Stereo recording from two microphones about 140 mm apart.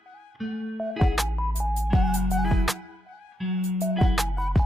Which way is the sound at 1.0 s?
Centre (ahead or behind).